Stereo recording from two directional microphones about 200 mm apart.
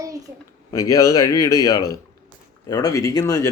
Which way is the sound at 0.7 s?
15° left (ahead or behind).